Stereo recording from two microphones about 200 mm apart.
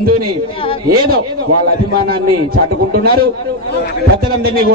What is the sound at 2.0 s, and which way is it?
A man's voice, 50° right (ahead or behind).